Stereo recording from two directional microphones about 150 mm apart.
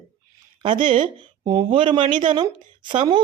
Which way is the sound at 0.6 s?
35° right (ahead or behind).